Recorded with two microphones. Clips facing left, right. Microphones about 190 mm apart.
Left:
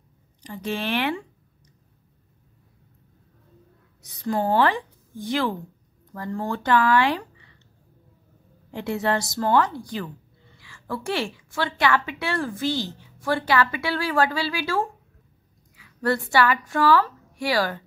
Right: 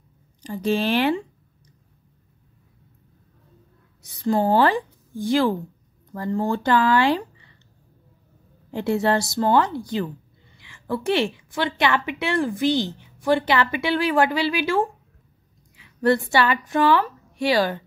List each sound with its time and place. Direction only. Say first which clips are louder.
0.4 s speech: right 6 dB; 30° right (ahead or behind)
4.3 s a woman's voice: right 3 dB; 30° right (ahead or behind)
8.7 s a woman's voice: right 4 dB; 30° right (ahead or behind)